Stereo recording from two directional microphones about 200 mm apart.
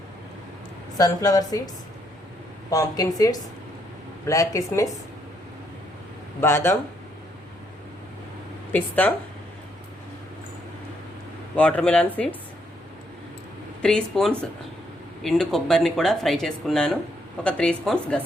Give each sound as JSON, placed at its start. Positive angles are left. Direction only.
{"t": 0.9, "sound": "a woman's voice", "side_deg": 20}
{"t": 6.4, "sound": "speech", "side_deg": 10}
{"t": 8.7, "sound": "speech", "side_deg": 10}
{"t": 11.5, "sound": "speech", "side_deg": 5}
{"t": 13.8, "sound": "speech", "side_deg": 5}